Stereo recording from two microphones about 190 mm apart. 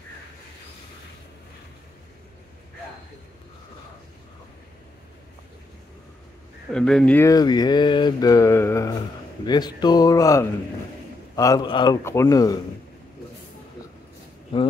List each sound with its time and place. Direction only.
6.7 s speech: 5° left (ahead or behind)